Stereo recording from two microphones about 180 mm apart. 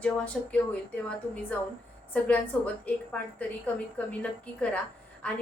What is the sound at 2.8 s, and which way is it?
A woman's voice, 10° left (ahead or behind).